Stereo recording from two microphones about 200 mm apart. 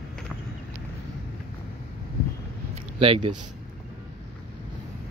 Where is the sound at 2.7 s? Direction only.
25° right (ahead or behind).